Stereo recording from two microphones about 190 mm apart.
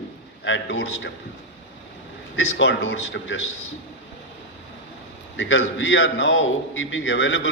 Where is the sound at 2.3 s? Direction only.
75° left (ahead or behind).